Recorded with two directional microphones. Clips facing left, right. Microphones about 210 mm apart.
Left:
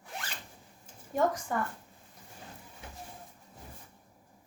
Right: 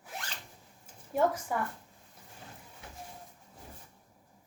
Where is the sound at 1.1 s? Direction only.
5° right (ahead or behind).